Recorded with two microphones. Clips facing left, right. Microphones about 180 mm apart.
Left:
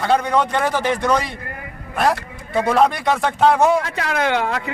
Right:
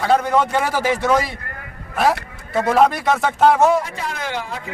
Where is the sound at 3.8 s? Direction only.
80° left.